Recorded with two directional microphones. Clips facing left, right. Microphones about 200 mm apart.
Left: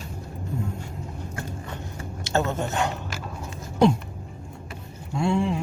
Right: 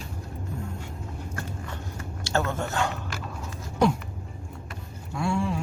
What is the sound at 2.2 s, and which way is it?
Speech, 20° left (ahead or behind).